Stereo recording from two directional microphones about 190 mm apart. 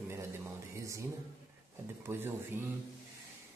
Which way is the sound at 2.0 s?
15° right (ahead or behind).